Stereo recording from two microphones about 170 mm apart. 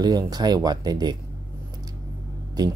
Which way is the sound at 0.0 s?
25° right (ahead or behind).